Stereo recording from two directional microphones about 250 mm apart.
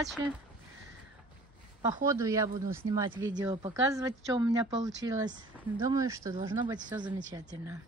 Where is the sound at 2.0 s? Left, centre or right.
Centre.